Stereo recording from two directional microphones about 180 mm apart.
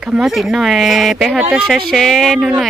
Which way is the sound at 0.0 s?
5° right (ahead or behind).